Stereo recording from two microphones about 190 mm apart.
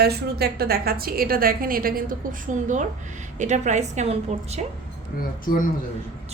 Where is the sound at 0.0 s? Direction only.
55° right (ahead or behind).